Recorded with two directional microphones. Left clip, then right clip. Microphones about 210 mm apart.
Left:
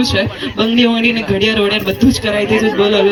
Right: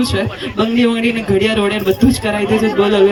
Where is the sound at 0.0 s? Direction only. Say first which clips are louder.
Left 3 dB; 40° right (ahead or behind).